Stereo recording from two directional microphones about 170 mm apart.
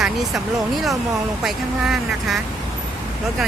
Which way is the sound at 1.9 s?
Centre (ahead or behind).